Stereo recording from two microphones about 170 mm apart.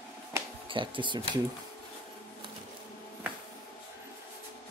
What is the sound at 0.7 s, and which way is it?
Speech, 30° right (ahead or behind).